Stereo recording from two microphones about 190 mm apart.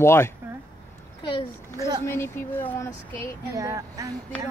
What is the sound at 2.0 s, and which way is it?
Speech, 10° left (ahead or behind).